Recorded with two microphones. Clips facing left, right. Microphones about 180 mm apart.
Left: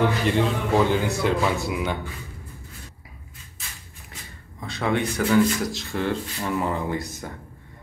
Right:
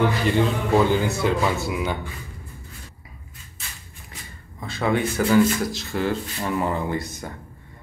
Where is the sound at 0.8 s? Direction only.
Centre (ahead or behind).